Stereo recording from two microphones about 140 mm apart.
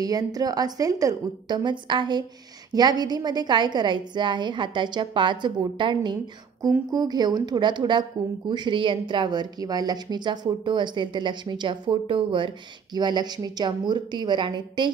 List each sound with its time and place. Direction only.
0.0 s a woman's voice: 25° right (ahead or behind)